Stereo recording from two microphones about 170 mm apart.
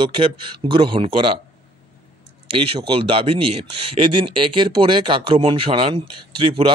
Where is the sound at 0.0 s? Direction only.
30° right (ahead or behind).